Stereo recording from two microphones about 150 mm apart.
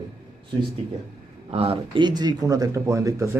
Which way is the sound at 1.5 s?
40° right (ahead or behind).